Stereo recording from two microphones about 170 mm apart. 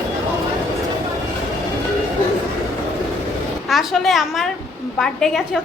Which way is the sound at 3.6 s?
Centre (ahead or behind).